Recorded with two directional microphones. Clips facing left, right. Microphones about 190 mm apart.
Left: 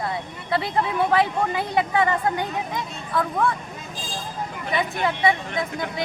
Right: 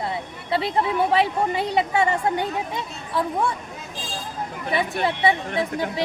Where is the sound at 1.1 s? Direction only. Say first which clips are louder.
Even; 25° right (ahead or behind).